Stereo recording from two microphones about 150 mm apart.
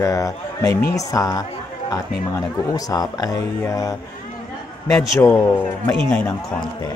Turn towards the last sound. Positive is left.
turn(degrees=10)  # may be behind; listen again after turning